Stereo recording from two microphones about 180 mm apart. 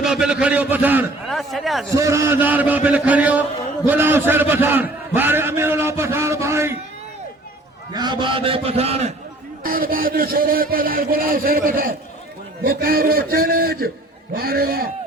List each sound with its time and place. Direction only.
0.0 s a man's voice: 5° right (ahead or behind)
1.9 s a man's voice: 15° right (ahead or behind)
7.9 s a man's voice: 25° right (ahead or behind)
9.6 s a man's voice: 50° right (ahead or behind)